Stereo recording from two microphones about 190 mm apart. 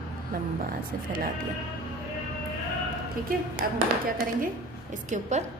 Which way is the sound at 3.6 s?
50° right (ahead or behind).